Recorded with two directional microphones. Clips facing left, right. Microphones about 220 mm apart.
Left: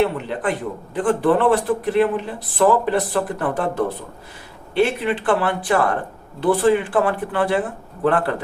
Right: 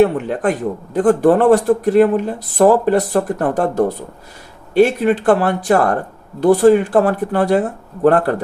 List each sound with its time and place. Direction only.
0.0 s speech: 45° right (ahead or behind)